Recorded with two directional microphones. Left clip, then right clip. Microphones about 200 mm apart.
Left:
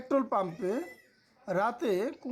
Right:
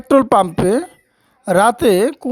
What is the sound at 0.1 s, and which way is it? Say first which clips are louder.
Speech: right 17 dB; 45° right (ahead or behind).